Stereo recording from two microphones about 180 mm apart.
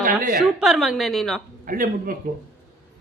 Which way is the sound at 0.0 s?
50° right (ahead or behind).